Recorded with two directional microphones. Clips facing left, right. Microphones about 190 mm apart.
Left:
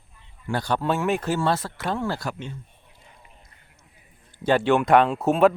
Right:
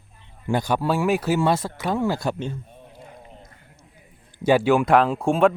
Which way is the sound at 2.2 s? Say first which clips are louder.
Right 6 dB; 30° right (ahead or behind).